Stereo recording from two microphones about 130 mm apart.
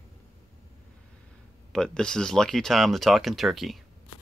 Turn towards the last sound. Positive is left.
turn(degrees=0)  # may be behind; listen again after turning